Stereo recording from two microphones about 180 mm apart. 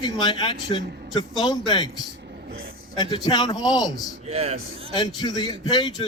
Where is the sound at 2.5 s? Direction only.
55° right (ahead or behind).